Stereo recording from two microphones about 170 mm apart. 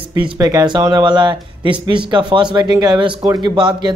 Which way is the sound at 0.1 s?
20° right (ahead or behind).